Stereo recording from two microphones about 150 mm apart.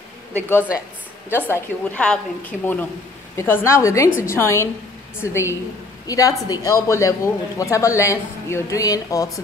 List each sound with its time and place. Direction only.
1.3 s a woman's voice: 10° left (ahead or behind)